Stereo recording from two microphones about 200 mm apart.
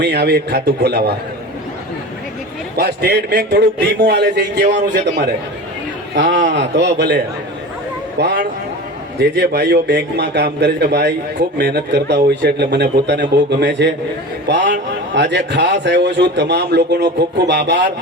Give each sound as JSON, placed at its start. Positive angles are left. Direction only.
{"t": 0.0, "sound": "a man's voice", "side_deg": -55}
{"t": 2.7, "sound": "a man's voice", "side_deg": -50}
{"t": 6.5, "sound": "a man's voice", "side_deg": -60}
{"t": 8.2, "sound": "a man's voice", "side_deg": -55}